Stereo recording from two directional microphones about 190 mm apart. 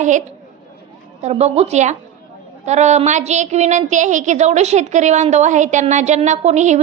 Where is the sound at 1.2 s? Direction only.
35° right (ahead or behind).